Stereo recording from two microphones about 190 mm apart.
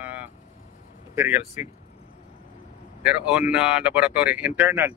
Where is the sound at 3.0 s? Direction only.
5° right (ahead or behind).